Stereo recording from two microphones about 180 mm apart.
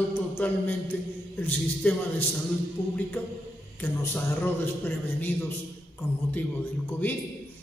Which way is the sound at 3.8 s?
10° left (ahead or behind).